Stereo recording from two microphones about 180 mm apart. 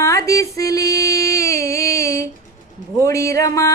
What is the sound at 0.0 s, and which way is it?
Female singing, 15° left (ahead or behind).